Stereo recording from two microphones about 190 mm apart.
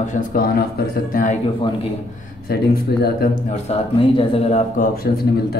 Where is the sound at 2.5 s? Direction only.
55° left (ahead or behind).